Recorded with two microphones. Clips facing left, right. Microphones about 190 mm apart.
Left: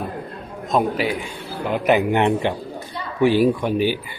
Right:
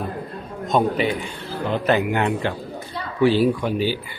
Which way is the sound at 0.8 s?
10° left (ahead or behind).